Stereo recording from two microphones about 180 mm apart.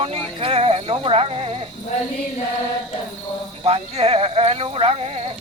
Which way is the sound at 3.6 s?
35° right (ahead or behind).